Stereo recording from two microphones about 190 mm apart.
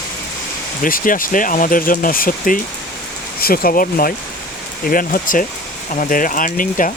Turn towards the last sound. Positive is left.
turn(degrees=45)  # may be behind; listen again after turning